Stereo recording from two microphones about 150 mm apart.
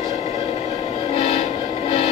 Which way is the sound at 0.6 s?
40° left (ahead or behind).